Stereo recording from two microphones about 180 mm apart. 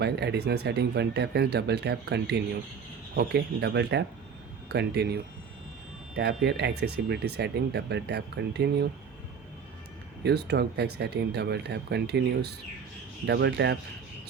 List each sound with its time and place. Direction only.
0.0 s speech: 65° right (ahead or behind)
10.2 s speech: 65° right (ahead or behind)